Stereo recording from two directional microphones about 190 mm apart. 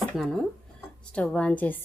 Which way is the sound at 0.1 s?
Centre (ahead or behind).